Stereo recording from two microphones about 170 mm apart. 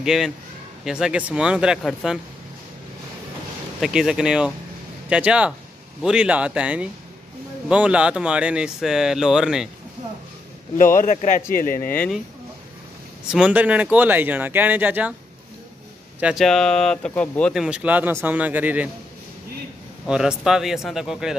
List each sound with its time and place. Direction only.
0.0 s a man's voice: centre (ahead or behind)
3.8 s speech: 5° right (ahead or behind)
11.0 s a man's voice: 45° left (ahead or behind)
11.9 s speech: 5° left (ahead or behind)
13.3 s speech: 5° right (ahead or behind)
16.2 s speech: 5° right (ahead or behind)
17.6 s speech: 10° right (ahead or behind)
20.1 s speech: 5° right (ahead or behind)